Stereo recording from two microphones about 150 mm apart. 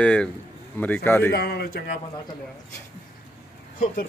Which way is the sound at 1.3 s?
90° left.